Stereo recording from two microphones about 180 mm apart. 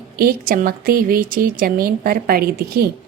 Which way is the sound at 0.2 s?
55° right (ahead or behind).